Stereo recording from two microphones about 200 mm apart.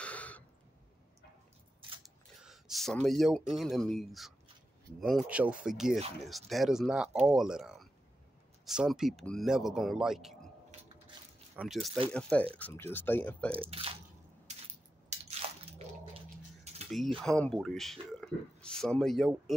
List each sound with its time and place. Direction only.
0.0 s a sound: 5° left (ahead or behind)
2.0 s speech: centre (ahead or behind)
11.5 s speech: centre (ahead or behind)
13.7 s speech: 30° right (ahead or behind)
15.1 s squish: 35° right (ahead or behind)
15.8 s bathtub: 35° right (ahead or behind)
16.7 s a sound: 30° right (ahead or behind)
17.2 s speech: 5° left (ahead or behind)